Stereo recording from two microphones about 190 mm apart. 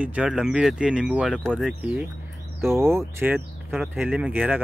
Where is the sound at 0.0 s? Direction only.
5° right (ahead or behind).